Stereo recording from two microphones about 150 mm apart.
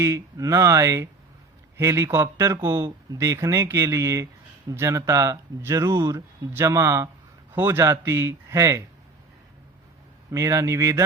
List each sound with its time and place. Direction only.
0.0 s speech: 20° right (ahead or behind)
10.3 s speech: 20° right (ahead or behind)